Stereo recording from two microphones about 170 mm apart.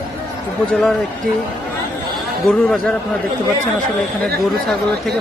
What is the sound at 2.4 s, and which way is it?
Speech, 5° left (ahead or behind).